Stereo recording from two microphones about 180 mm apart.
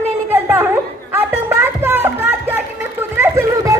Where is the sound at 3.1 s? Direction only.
15° right (ahead or behind).